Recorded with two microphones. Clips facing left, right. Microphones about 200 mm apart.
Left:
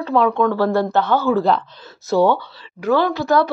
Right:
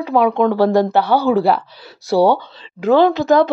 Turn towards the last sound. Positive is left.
turn(degrees=-20)  # may be behind; listen again after turning